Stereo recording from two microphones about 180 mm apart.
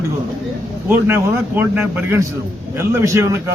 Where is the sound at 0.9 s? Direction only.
10° right (ahead or behind).